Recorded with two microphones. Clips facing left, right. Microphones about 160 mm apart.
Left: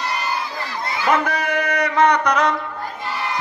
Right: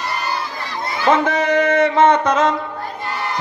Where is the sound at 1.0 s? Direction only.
25° right (ahead or behind).